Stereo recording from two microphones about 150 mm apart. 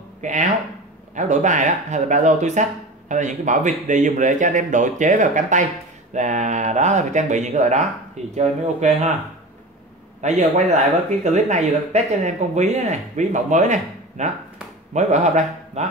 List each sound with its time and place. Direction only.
0.2 s speech: 55° right (ahead or behind)
10.2 s speech: 50° right (ahead or behind)